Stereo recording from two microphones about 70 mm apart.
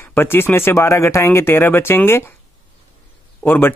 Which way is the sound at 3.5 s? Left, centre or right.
Left.